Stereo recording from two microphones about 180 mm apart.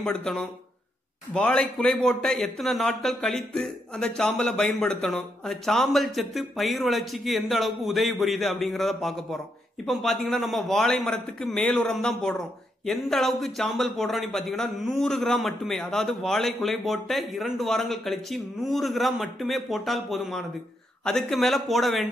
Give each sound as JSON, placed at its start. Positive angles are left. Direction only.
{"t": 0.0, "sound": "a man's voice", "side_deg": 5}